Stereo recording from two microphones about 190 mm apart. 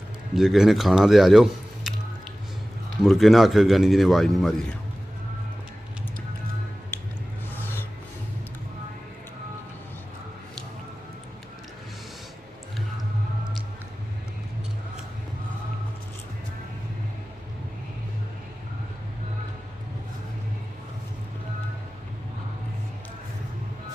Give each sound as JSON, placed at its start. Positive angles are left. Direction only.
{"t": 0.3, "sound": "speech", "side_deg": 0}
{"t": 3.0, "sound": "speech", "side_deg": 0}
{"t": 6.9, "sound": "squish", "side_deg": 10}